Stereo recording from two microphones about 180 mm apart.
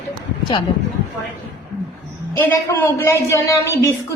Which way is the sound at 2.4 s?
15° left (ahead or behind).